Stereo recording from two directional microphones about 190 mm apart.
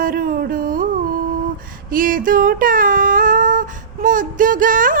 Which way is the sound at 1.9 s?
45° right (ahead or behind).